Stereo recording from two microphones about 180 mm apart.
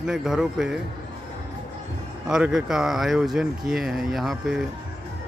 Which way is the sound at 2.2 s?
5° right (ahead or behind).